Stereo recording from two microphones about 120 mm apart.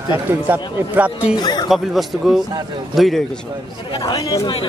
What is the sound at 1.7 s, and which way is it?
A man's voice, centre (ahead or behind).